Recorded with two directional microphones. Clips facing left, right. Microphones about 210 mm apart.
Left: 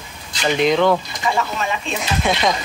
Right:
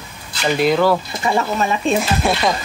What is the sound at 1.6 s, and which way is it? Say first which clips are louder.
Speech: right 6 dB; 40° right (ahead or behind).